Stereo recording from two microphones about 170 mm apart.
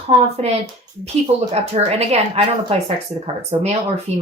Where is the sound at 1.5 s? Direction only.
40° right (ahead or behind).